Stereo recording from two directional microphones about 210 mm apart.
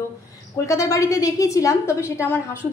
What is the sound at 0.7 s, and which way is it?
A woman's voice, 15° left (ahead or behind).